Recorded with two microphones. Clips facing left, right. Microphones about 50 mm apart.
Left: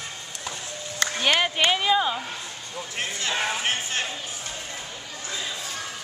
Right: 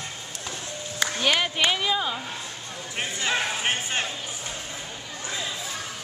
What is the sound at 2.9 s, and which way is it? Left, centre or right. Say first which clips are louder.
Speech: right 2 dB; centre.